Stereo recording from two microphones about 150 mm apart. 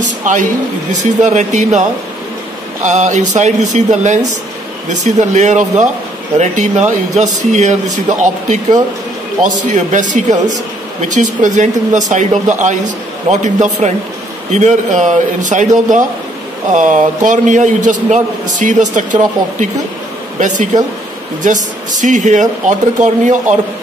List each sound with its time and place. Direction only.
0.0 s a sound: 55° right (ahead or behind)
1.0 s speech: 50° right (ahead or behind)
9.6 s a man's voice: 55° right (ahead or behind)